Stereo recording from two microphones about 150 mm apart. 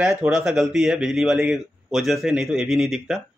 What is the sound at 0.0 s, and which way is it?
Speech, 5° right (ahead or behind).